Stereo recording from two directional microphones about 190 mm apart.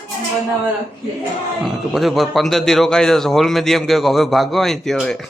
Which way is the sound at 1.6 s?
Centre (ahead or behind).